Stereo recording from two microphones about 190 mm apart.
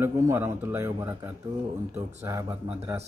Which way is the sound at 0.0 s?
15° right (ahead or behind).